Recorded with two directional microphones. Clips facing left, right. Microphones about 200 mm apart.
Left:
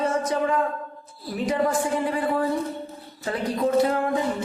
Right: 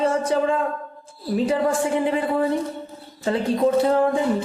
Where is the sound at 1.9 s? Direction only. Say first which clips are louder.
Right 3 dB; 20° right (ahead or behind).